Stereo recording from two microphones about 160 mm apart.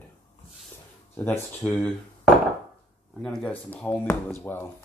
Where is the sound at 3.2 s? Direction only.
5° left (ahead or behind).